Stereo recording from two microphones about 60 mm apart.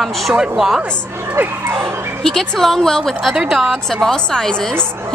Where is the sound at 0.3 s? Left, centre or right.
Centre.